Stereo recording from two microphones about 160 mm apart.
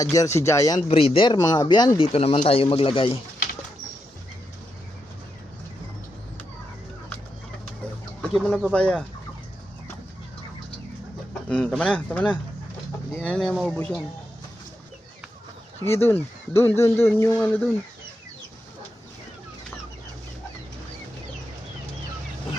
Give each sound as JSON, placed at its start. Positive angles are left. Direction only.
{"t": 0.0, "sound": "speech", "side_deg": 20}
{"t": 0.8, "sound": "a man's voice", "side_deg": 35}
{"t": 2.1, "sound": "a man's voice", "side_deg": 40}
{"t": 8.2, "sound": "speech", "side_deg": 0}
{"t": 11.4, "sound": "speech", "side_deg": 5}
{"t": 13.7, "sound": "speech", "side_deg": 15}
{"t": 15.8, "sound": "speech", "side_deg": 15}